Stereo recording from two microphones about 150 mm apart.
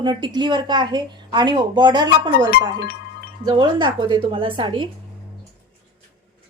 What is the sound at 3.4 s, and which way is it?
A woman's voice, 30° right (ahead or behind).